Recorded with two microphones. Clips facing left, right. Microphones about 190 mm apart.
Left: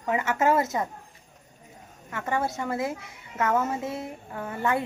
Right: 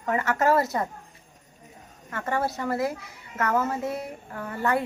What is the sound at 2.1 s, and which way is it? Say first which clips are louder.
Speech: even; 10° left (ahead or behind).